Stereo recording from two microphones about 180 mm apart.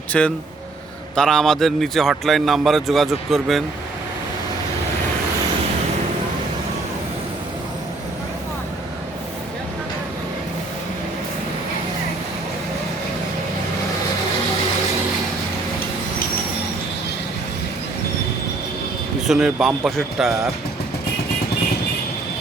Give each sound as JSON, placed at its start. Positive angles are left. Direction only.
{"t": 0.1, "sound": "a man's voice", "side_deg": 5}
{"t": 19.3, "sound": "a man's voice", "side_deg": -5}